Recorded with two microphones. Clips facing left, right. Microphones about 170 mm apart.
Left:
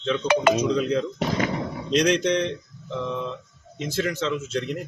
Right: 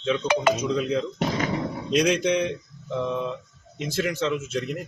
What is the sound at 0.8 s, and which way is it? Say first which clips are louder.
Speech: left 1 dB; centre (ahead or behind).